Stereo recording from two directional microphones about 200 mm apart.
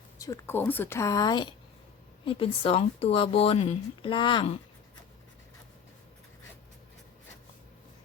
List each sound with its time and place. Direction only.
0.2 s speech: 15° left (ahead or behind)